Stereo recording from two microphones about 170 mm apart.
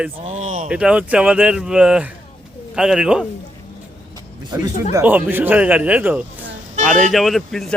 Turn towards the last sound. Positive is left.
turn(degrees=0)  # may be behind; listen again after turning